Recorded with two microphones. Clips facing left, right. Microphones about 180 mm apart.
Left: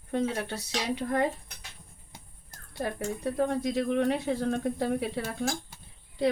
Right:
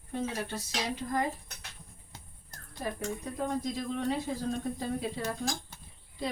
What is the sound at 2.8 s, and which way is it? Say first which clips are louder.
Speech: left 4 dB; 70° left (ahead or behind).